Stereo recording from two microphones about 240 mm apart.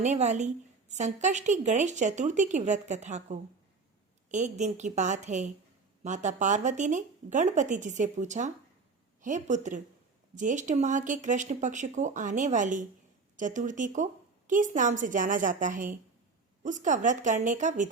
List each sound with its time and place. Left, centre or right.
0.0 s a woman's voice: right